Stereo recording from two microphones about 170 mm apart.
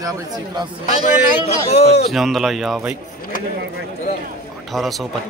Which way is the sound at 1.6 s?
40° left (ahead or behind).